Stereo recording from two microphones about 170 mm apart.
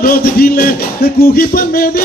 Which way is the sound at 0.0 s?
60° left (ahead or behind).